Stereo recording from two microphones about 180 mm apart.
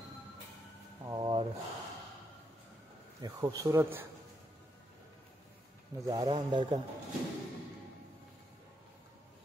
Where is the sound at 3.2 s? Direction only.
20° right (ahead or behind).